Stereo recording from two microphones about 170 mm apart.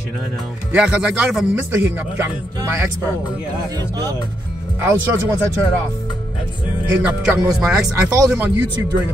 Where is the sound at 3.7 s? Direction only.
20° right (ahead or behind).